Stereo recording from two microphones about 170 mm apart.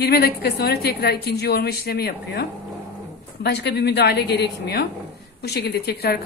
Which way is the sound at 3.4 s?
80° left.